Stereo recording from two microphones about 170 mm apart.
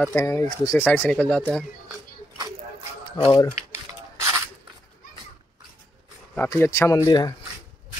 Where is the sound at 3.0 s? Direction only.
30° left (ahead or behind).